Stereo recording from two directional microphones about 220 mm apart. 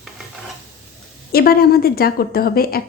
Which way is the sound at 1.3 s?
45° left (ahead or behind).